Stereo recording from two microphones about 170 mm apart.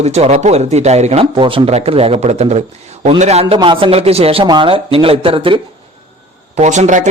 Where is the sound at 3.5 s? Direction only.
30° right (ahead or behind).